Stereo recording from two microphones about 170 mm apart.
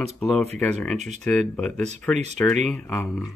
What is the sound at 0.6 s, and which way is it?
Speech, 5° left (ahead or behind).